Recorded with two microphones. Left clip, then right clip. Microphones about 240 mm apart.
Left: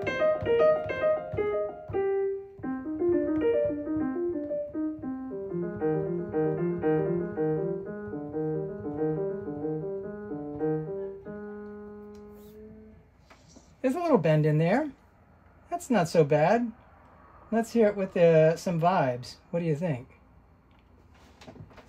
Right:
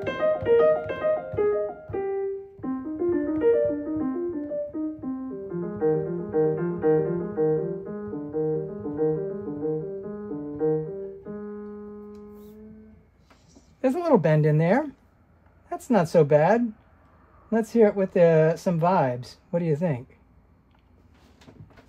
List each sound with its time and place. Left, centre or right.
0.2 s music: centre
13.7 s a sound: right
15.7 s speech: right